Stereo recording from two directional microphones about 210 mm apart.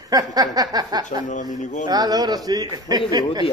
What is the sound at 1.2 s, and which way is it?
Speech, 35° left (ahead or behind).